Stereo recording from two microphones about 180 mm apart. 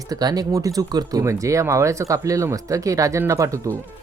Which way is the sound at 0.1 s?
20° right (ahead or behind).